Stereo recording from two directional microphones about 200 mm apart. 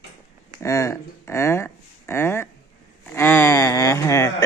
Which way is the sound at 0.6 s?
15° left (ahead or behind).